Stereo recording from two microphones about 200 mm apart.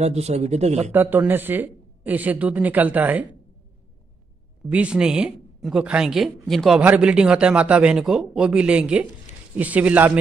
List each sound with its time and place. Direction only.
0.0 s speech: 35° right (ahead or behind)
0.9 s speech: 10° right (ahead or behind)
4.6 s speech: 5° right (ahead or behind)